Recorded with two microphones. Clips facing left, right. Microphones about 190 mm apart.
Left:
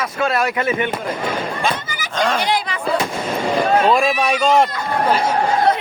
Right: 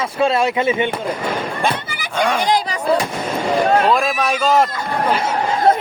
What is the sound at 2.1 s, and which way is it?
Speech, 10° right (ahead or behind).